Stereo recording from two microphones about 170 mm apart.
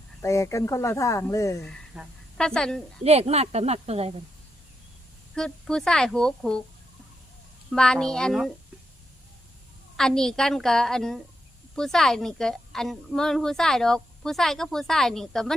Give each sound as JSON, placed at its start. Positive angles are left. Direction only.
{"t": 0.2, "sound": "speech", "side_deg": 15}
{"t": 2.0, "sound": "a woman's voice", "side_deg": -5}
{"t": 3.0, "sound": "speech", "side_deg": -40}
{"t": 5.3, "sound": "a woman's voice", "side_deg": 5}
{"t": 7.7, "sound": "a woman's voice", "side_deg": 5}
{"t": 10.0, "sound": "a woman's voice", "side_deg": 5}